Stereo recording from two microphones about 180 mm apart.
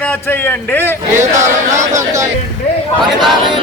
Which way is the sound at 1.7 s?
15° right (ahead or behind).